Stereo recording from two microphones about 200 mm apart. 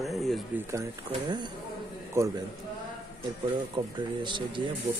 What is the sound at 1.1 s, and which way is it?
Speech, 20° right (ahead or behind).